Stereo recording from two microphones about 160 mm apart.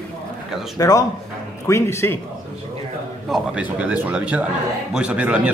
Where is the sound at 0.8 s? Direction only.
20° left (ahead or behind).